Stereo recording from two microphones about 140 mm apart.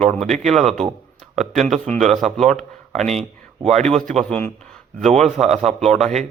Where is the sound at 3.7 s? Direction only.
50° right (ahead or behind).